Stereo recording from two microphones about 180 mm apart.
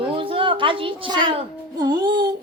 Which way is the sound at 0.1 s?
30° right (ahead or behind).